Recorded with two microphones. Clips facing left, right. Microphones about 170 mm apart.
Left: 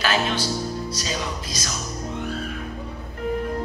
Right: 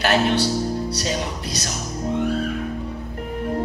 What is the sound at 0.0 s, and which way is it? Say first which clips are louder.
Speech: right 5 dB; 65° right (ahead or behind).